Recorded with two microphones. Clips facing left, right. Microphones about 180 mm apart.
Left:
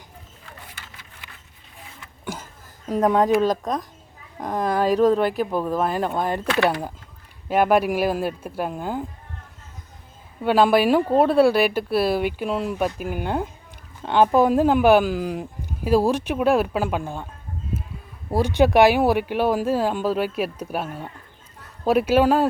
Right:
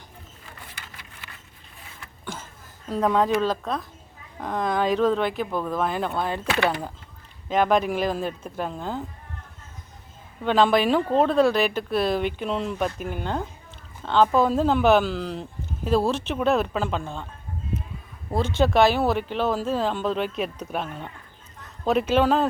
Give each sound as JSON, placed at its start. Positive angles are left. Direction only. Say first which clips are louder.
{"t": 1.2, "sound": "a sound", "louder": "even", "side_deg": 15}
{"t": 2.9, "sound": "speech", "louder": "left 3 dB", "side_deg": 15}
{"t": 10.4, "sound": "speech", "louder": "left 3 dB", "side_deg": 10}
{"t": 18.3, "sound": "speech", "louder": "left 4 dB", "side_deg": 10}